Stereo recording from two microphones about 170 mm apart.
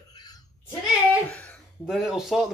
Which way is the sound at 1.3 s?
5° left (ahead or behind).